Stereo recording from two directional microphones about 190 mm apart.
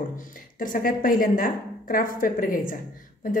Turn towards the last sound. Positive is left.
turn(degrees=45)  # may be behind; listen again after turning